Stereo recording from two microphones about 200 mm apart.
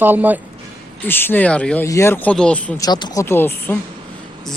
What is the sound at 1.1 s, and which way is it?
Speech, 10° left (ahead or behind).